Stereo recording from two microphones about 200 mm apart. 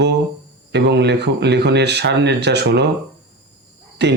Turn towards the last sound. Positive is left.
turn(degrees=-60)  # may be behind; listen again after turning